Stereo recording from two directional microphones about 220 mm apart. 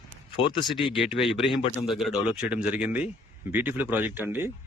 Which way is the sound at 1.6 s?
25° left (ahead or behind).